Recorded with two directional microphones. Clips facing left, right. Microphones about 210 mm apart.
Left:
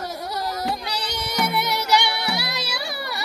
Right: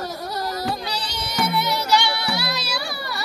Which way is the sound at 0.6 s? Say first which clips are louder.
Right 1 dB; 20° left (ahead or behind).